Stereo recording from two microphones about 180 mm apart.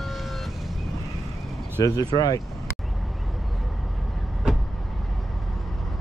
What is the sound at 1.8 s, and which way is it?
Speech, 20° left (ahead or behind).